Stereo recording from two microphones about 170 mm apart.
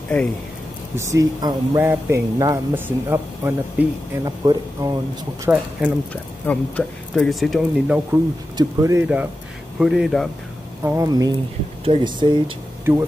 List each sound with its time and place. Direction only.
0.9 s speech: 20° right (ahead or behind)
5.4 s speech: 10° right (ahead or behind)
6.4 s speech: 5° left (ahead or behind)
8.1 s speech: 20° right (ahead or behind); by 10.3 s centre (ahead or behind)
10.8 s speech: 10° right (ahead or behind)
11.1 s speech: 25° right (ahead or behind)